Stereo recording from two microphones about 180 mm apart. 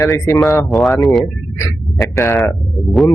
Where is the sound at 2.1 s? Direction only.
15° left (ahead or behind).